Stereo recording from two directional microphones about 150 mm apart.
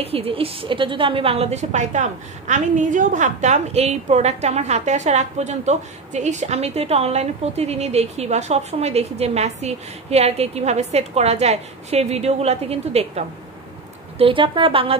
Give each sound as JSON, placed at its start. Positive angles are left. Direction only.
{"t": 0.0, "sound": "a woman's voice", "side_deg": -40}